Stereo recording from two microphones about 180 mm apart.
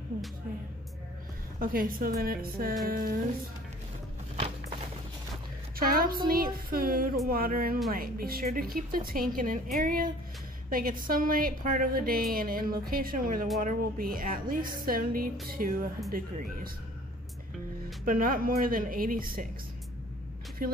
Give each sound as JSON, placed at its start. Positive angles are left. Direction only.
{"t": 1.6, "sound": "a woman's voice", "side_deg": -50}
{"t": 5.8, "sound": "a woman's voice", "side_deg": -55}
{"t": 18.0, "sound": "a woman's voice", "side_deg": -50}
{"t": 20.6, "sound": "speech", "side_deg": -50}